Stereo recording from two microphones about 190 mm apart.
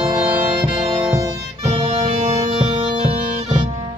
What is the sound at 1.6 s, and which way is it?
Music, 30° right (ahead or behind).